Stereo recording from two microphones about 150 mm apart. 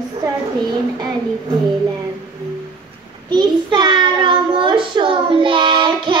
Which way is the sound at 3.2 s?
30° right (ahead or behind).